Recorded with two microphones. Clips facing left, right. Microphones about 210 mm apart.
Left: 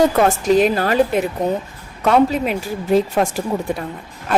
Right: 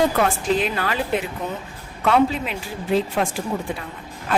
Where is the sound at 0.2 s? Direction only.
40° left (ahead or behind).